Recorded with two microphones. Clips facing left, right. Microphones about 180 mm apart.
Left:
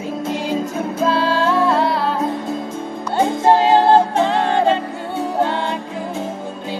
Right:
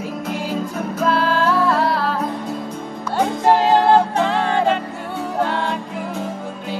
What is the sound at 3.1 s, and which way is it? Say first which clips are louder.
Music: left 2 dB; 25° left (ahead or behind).